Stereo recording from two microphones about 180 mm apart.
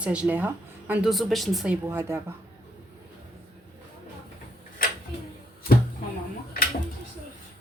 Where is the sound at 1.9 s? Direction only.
15° right (ahead or behind).